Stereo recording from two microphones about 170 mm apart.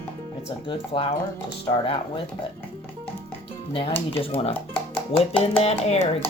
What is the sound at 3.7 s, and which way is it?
Speech, 35° left (ahead or behind).